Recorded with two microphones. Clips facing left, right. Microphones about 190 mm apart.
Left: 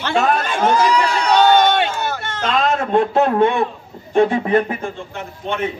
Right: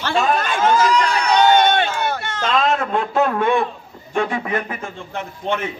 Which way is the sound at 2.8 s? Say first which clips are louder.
Left 4 dB; 35° left (ahead or behind).